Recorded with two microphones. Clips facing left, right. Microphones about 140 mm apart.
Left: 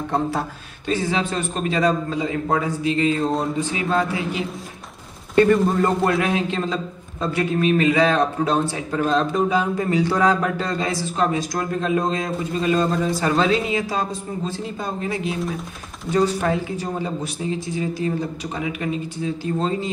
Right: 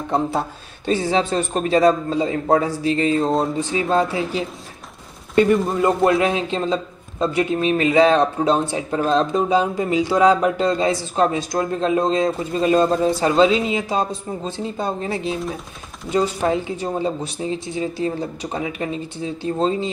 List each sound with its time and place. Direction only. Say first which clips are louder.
0.8 s a man's voice: right 3 dB; 30° right (ahead or behind)
5.7 s a man's voice: right 1 dB; centre (ahead or behind)
6.0 s a man's voice: right 3 dB; 25° right (ahead or behind)